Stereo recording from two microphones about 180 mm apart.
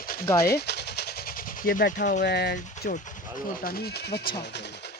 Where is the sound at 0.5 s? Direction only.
65° left (ahead or behind); by 2.2 s 45° left (ahead or behind).